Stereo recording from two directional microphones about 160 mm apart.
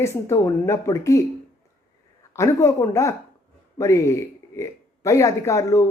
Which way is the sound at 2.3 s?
20° left (ahead or behind).